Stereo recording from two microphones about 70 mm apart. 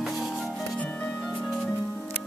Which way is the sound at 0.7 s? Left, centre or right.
Centre.